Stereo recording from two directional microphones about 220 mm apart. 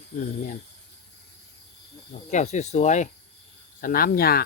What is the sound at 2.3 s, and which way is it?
Speech, 30° left (ahead or behind).